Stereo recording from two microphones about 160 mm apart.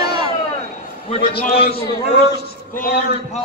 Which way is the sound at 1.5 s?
75° left (ahead or behind).